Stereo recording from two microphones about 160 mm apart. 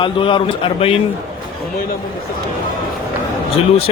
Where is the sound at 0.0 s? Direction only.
30° left (ahead or behind).